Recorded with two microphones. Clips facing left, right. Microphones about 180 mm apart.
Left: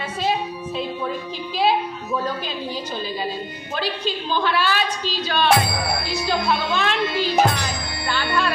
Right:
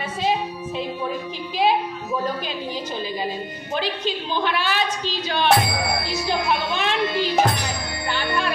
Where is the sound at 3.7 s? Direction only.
20° right (ahead or behind).